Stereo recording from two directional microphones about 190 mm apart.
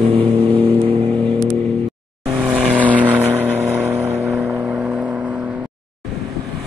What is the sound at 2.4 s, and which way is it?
Vehicle, 5° right (ahead or behind).